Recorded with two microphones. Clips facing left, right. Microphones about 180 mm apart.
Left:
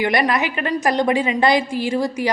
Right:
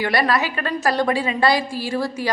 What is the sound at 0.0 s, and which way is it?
A woman's voice, 20° left (ahead or behind).